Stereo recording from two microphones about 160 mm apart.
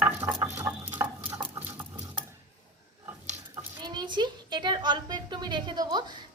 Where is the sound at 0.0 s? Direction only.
10° right (ahead or behind).